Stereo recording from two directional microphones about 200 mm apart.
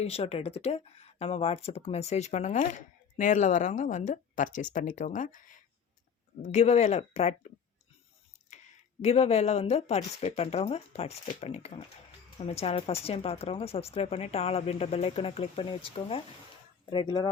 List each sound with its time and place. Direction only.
0.0 s speech: 30° left (ahead or behind)
9.0 s speech: 35° left (ahead or behind)